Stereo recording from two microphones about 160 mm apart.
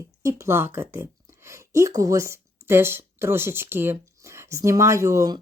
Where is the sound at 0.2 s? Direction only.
20° right (ahead or behind).